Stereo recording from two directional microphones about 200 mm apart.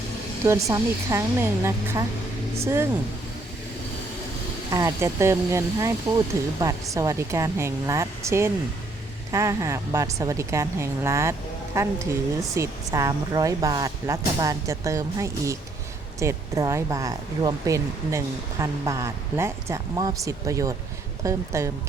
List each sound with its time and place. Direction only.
0.4 s speech: 15° right (ahead or behind)
4.7 s speech: 15° right (ahead or behind)